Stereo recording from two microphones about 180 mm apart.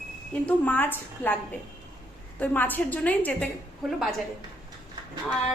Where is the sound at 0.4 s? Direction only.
10° left (ahead or behind).